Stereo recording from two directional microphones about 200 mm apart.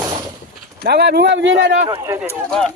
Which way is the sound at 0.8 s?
55° right (ahead or behind).